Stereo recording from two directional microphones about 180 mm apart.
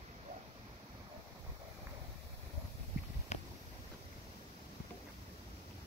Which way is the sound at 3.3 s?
40° left (ahead or behind).